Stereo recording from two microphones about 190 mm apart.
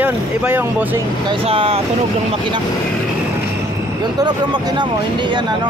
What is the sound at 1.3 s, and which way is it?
Speech, 30° right (ahead or behind).